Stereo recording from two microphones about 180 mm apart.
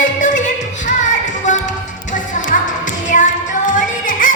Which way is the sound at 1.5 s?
45° left (ahead or behind).